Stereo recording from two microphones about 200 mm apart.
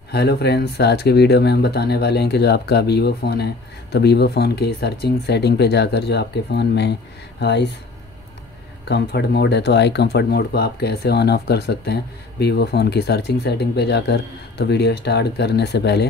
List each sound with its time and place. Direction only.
0.1 s speech: 55° left (ahead or behind)
8.8 s speech: 55° left (ahead or behind)